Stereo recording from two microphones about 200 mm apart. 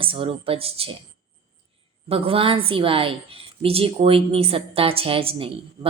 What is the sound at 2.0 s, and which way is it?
A woman's voice, 30° right (ahead or behind).